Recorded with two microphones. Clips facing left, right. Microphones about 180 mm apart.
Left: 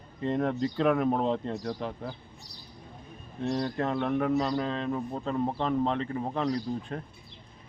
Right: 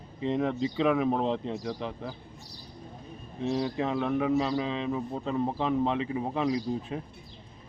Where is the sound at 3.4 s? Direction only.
5° right (ahead or behind).